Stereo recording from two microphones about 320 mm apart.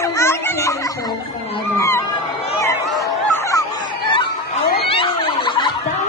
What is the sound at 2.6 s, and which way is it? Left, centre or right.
Chatter, centre.